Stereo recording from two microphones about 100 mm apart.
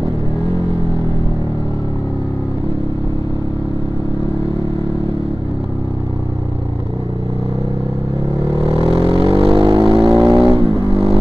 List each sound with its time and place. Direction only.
8.5 s vehicle: 75° right (ahead or behind); by 10.1 s 55° right (ahead or behind)
10.1 s vehicle: centre (ahead or behind)
10.5 s vehicle: 65° right (ahead or behind)